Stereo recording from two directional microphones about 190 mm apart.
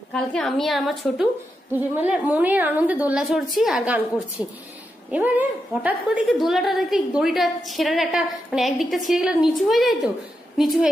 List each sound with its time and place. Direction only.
0.1 s a woman's voice: 5° left (ahead or behind)